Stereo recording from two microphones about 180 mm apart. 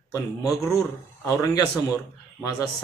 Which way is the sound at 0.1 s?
20° left (ahead or behind).